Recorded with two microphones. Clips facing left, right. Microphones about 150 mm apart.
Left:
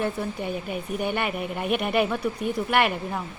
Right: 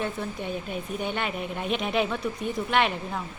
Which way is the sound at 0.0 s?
5° left (ahead or behind).